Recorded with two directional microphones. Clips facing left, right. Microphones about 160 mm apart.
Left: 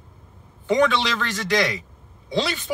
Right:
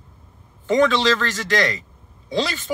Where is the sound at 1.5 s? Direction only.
15° left (ahead or behind).